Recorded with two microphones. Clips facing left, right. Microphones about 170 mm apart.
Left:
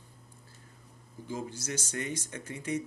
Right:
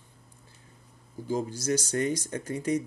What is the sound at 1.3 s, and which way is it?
Speech, 35° right (ahead or behind).